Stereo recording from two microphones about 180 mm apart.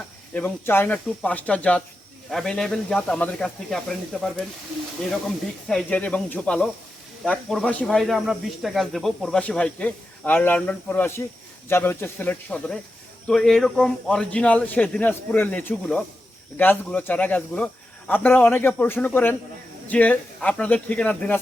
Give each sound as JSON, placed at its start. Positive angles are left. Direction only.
{"t": 0.3, "sound": "speech", "side_deg": 10}
{"t": 5.6, "sound": "speech", "side_deg": 5}